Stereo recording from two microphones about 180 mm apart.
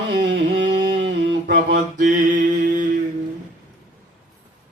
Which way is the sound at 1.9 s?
45° right (ahead or behind).